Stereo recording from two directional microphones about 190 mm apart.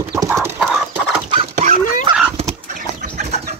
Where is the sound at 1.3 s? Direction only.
35° right (ahead or behind).